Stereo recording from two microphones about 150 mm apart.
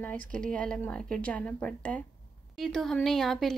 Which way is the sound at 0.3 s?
5° left (ahead or behind).